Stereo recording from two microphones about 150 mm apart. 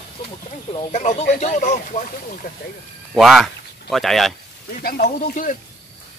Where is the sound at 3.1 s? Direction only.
Centre (ahead or behind).